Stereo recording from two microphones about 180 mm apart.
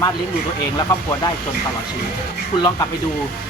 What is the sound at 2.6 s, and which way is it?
Speech, 20° left (ahead or behind).